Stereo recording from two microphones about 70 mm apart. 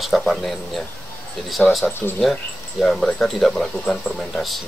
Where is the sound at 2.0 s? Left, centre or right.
Left.